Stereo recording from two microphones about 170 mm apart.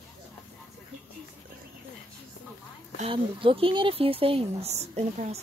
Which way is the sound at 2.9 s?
35° right (ahead or behind).